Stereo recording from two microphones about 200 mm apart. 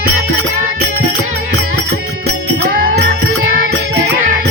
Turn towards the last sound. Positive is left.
turn(degrees=-45)  # may be behind; listen again after turning